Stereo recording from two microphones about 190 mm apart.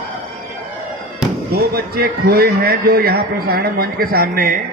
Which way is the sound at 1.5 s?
55° right (ahead or behind).